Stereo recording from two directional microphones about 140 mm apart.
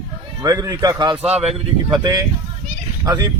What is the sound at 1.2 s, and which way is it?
Speech, 50° right (ahead or behind).